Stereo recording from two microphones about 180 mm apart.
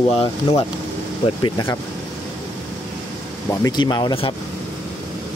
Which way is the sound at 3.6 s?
25° left (ahead or behind).